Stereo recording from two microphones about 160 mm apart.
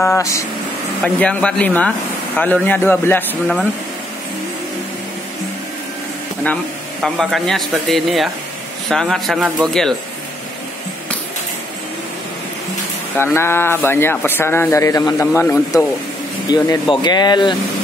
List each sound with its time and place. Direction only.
0.0 s speech: 20° left (ahead or behind)
1.0 s speech: 5° left (ahead or behind)
6.4 s speech: 5° left (ahead or behind)
13.1 s speech: 15° left (ahead or behind)